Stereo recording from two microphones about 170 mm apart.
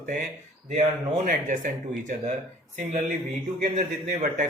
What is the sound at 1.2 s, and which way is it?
Speech, 50° right (ahead or behind).